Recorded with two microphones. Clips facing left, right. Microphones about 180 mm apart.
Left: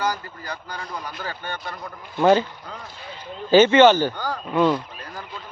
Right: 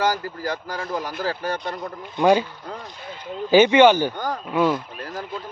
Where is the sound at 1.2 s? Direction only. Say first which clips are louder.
Right 8 dB; 75° right (ahead or behind).